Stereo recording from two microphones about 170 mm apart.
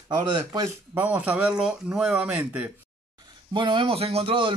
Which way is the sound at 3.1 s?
25° right (ahead or behind).